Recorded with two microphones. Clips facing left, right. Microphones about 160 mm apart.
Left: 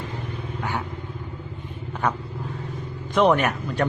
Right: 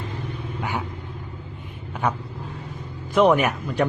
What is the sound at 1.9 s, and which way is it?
Vehicle, 10° right (ahead or behind).